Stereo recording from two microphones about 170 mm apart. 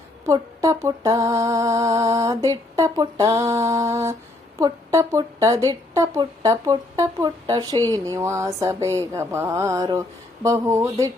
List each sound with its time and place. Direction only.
0.3 s speech: 20° right (ahead or behind)